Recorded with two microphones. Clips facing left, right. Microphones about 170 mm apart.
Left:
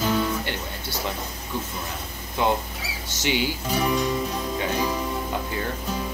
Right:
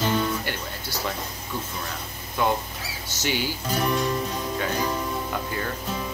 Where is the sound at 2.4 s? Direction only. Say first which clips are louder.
Left 1 dB; 20° left (ahead or behind).